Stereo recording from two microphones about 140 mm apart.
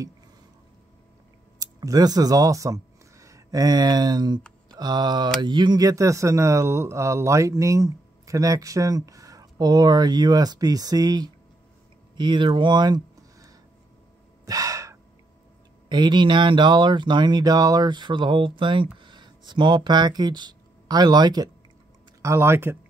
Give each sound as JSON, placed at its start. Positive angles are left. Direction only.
{"t": 1.6, "sound": "speech", "side_deg": -25}
{"t": 14.4, "sound": "gasp", "side_deg": -25}
{"t": 15.9, "sound": "speech", "side_deg": -30}